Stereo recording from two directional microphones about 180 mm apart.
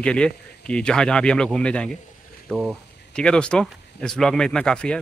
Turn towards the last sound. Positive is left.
turn(degrees=5)  # may be behind; listen again after turning